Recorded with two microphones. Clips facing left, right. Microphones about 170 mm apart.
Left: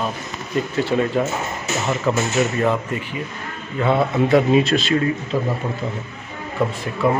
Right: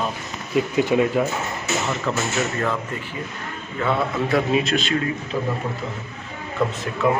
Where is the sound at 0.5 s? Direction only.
10° right (ahead or behind).